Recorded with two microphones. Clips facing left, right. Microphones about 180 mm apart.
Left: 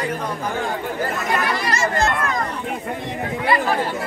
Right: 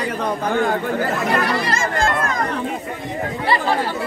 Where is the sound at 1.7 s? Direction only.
50° right (ahead or behind).